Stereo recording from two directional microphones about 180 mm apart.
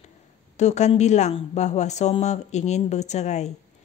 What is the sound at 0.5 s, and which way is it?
Speech, 40° left (ahead or behind).